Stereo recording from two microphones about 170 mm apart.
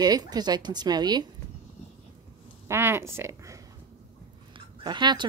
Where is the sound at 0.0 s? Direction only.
25° right (ahead or behind).